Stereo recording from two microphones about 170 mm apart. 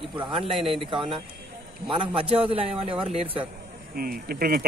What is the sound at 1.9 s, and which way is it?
A man's voice, 30° right (ahead or behind).